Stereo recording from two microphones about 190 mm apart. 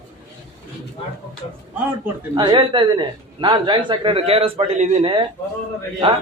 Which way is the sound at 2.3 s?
25° right (ahead or behind).